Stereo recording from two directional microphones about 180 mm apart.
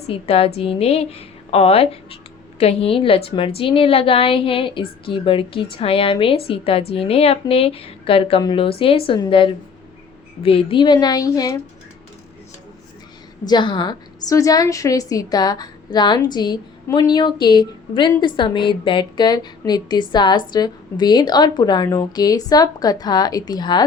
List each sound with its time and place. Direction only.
0.1 s a woman's voice: 30° left (ahead or behind)
13.4 s a woman's voice: 25° left (ahead or behind)